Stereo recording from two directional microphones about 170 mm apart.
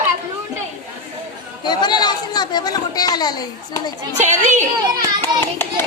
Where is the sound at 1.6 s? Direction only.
25° left (ahead or behind).